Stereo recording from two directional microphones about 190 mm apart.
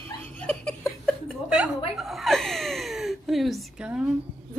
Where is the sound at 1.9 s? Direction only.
Centre (ahead or behind).